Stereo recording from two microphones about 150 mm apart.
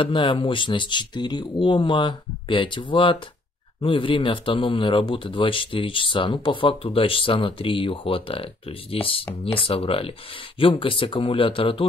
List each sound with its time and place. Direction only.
0.0 s speech: 35° left (ahead or behind)